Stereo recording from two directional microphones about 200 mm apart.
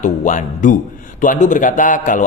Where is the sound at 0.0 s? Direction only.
40° left (ahead or behind).